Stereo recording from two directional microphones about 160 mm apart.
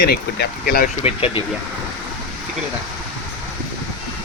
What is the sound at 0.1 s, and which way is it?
Speech, 85° left.